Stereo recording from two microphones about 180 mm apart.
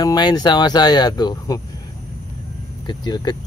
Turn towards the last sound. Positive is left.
turn(degrees=25)  # may be behind; listen again after turning